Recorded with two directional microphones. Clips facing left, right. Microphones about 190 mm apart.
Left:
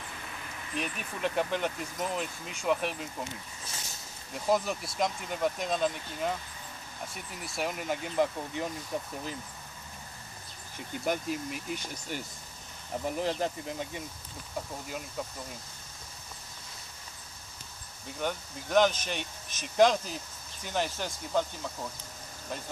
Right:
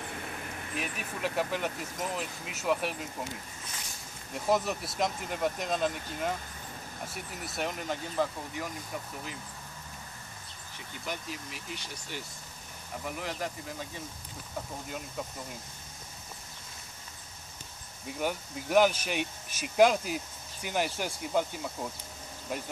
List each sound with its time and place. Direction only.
0.3 s vehicle: 50° right (ahead or behind)
0.7 s speech: 5° right (ahead or behind)
4.3 s speech: centre (ahead or behind)
7.5 s speech: 5° left (ahead or behind)
8.9 s speech: 30° left (ahead or behind)
11.1 s speech: 50° left (ahead or behind)
13.0 s speech: 30° left (ahead or behind)
14.9 s speech: centre (ahead or behind)
18.2 s speech: 10° right (ahead or behind)